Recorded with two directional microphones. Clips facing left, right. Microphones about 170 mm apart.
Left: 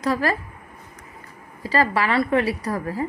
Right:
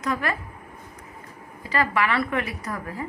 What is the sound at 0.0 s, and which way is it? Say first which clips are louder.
Speech: left 5 dB; 35° left (ahead or behind).